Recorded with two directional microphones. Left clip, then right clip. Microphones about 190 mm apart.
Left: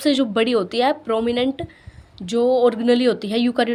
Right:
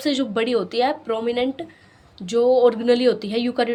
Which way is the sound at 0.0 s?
20° left (ahead or behind).